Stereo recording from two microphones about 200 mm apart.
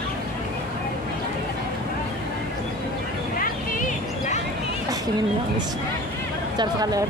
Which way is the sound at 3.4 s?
40° left (ahead or behind).